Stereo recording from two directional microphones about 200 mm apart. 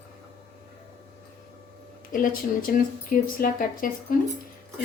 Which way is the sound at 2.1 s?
45° left (ahead or behind).